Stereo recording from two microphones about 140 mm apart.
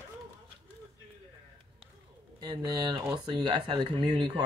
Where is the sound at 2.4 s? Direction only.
30° right (ahead or behind).